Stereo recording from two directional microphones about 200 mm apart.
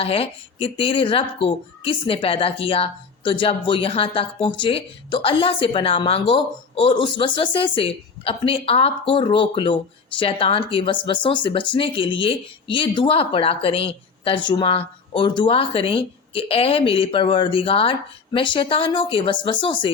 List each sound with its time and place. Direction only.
0.0 s speech: 30° left (ahead or behind)